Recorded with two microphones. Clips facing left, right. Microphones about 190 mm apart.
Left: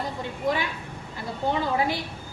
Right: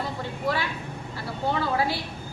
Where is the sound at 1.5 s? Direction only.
20° left (ahead or behind).